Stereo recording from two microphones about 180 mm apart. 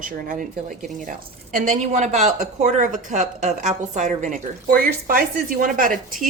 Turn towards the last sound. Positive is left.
turn(degrees=-50)  # may be behind; listen again after turning